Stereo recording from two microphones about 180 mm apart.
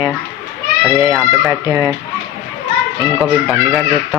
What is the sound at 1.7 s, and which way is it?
Speech, 15° right (ahead or behind).